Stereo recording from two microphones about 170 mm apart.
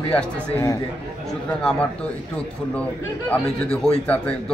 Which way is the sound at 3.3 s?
5° left (ahead or behind).